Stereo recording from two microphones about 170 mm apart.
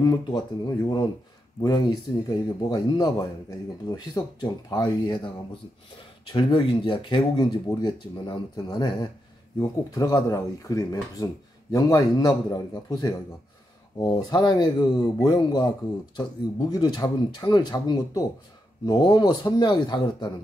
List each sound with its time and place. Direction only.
0.0 s speech: 25° left (ahead or behind)
14.1 s speech: 25° left (ahead or behind)
16.7 s speech: 25° left (ahead or behind)